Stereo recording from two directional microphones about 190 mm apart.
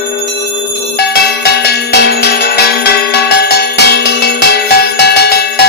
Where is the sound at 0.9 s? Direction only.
60° left (ahead or behind).